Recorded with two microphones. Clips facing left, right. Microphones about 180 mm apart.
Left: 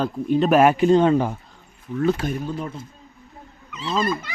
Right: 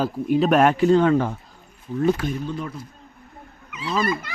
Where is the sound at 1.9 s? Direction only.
35° right (ahead or behind).